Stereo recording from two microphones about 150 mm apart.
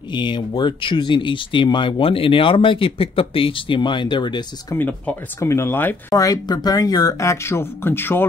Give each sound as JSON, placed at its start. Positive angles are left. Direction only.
{"t": 0.1, "sound": "speech", "side_deg": 30}
{"t": 4.7, "sound": "speech", "side_deg": 10}